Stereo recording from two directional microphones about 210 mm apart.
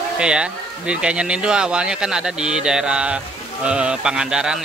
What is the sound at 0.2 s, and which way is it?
Speech, 5° right (ahead or behind).